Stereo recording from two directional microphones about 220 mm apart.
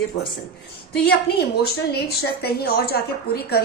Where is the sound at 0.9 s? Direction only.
45° left (ahead or behind).